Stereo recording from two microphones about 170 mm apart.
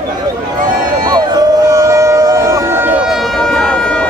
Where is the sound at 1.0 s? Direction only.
25° right (ahead or behind).